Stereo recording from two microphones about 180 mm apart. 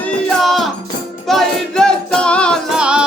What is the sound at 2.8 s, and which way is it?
Music, 5° right (ahead or behind).